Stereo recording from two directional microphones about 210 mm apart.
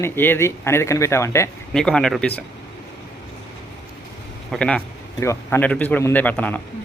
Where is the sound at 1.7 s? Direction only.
5° left (ahead or behind).